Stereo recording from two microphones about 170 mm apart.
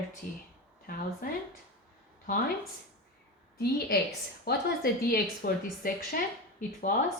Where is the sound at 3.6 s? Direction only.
70° left (ahead or behind).